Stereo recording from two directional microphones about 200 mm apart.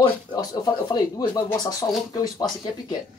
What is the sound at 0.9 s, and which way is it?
Speech, 20° left (ahead or behind).